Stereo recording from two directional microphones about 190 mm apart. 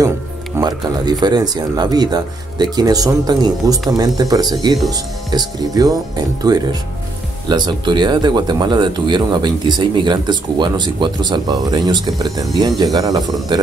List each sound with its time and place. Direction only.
0.6 s speech: 20° right (ahead or behind)